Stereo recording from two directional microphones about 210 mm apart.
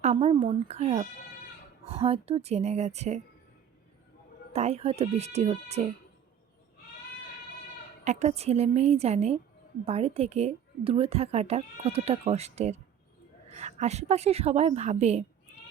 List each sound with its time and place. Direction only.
0.0 s a woman's voice: 30° right (ahead or behind)
4.5 s a woman's voice: 30° right (ahead or behind)
8.0 s a woman's voice: 30° right (ahead or behind)